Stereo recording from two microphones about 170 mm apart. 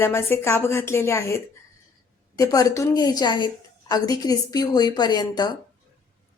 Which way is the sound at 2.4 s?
20° left (ahead or behind).